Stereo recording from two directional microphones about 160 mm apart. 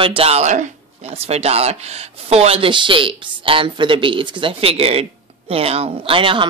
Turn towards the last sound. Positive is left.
turn(degrees=-35)  # may be behind; listen again after turning